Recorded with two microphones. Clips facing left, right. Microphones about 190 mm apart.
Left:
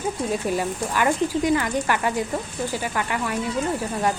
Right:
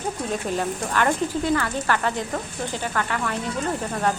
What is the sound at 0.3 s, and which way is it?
Speech, 10° left (ahead or behind).